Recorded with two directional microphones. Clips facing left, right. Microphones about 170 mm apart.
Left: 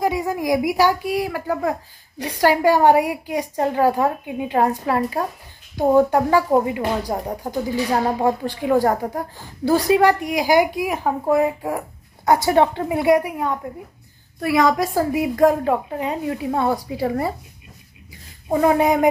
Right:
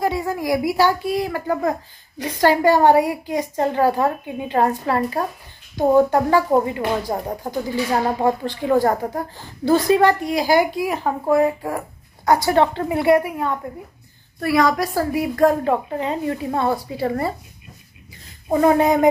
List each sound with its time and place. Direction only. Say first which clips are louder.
0.0 s a woman's voice: left 1 dB; 15° left (ahead or behind)
15.6 s a woman's voice: even; 5° left (ahead or behind)
18.5 s a woman's voice: right 1 dB; 5° left (ahead or behind)